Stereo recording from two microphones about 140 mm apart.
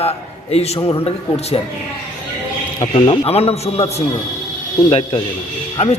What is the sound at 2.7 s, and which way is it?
A man's voice, 35° left (ahead or behind).